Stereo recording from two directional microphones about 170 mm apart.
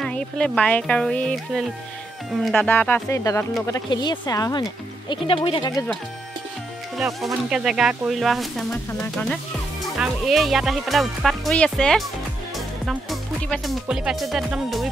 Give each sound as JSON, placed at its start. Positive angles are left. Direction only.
{"t": 0.0, "sound": "speech", "side_deg": 5}
{"t": 7.0, "sound": "speech", "side_deg": 0}